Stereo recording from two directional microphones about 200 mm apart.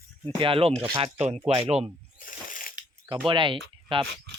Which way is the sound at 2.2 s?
45° left (ahead or behind).